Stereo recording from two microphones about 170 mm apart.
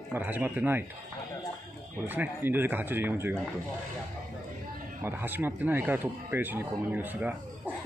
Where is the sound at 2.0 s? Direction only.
10° right (ahead or behind).